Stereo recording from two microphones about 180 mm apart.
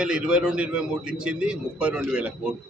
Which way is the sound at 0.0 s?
5° right (ahead or behind).